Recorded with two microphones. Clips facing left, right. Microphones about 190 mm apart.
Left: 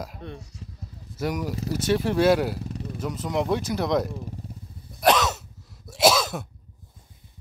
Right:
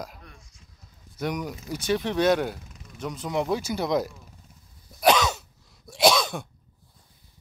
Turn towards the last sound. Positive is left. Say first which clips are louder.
# left 1 dB
turn(degrees=5)  # may be behind; listen again after turning